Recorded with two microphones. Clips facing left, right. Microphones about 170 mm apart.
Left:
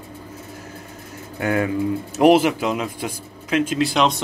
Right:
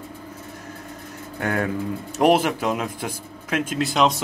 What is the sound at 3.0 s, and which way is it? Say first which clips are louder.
Speech: left 2 dB; 55° right (ahead or behind).